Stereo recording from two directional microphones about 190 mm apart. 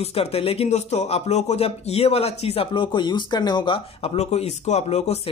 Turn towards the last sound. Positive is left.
turn(degrees=35)  # may be behind; listen again after turning